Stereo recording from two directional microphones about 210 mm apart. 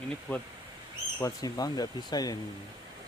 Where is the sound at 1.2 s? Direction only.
15° left (ahead or behind).